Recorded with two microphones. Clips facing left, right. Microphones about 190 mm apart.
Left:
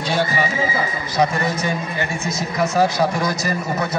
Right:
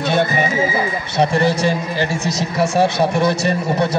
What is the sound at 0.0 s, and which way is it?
Horse, 60° right (ahead or behind).